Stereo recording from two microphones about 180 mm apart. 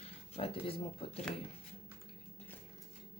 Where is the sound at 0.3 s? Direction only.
30° left (ahead or behind).